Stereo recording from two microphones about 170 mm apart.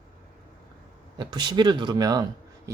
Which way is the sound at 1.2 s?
25° right (ahead or behind).